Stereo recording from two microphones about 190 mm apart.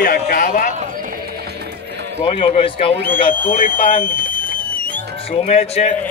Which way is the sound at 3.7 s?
30° left (ahead or behind).